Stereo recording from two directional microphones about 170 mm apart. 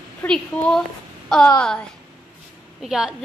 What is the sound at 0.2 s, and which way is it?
A woman's voice, 5° left (ahead or behind).